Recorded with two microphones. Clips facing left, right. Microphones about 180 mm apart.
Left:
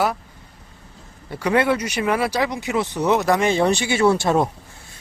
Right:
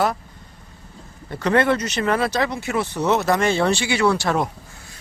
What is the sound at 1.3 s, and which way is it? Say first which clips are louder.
Speech: even; 10° left (ahead or behind).